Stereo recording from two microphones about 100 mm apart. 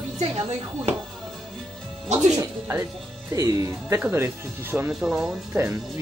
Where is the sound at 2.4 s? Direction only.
25° right (ahead or behind).